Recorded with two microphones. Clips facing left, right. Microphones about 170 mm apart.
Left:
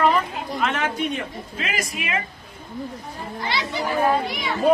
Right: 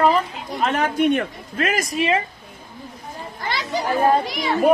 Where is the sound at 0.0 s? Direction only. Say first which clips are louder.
Right 2 dB; 35° right (ahead or behind).